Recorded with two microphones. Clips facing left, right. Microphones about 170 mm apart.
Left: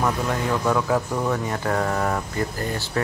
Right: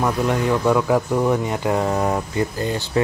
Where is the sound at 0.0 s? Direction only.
15° right (ahead or behind).